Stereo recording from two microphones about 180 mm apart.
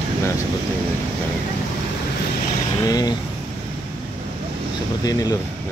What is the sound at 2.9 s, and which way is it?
Speech, 20° left (ahead or behind).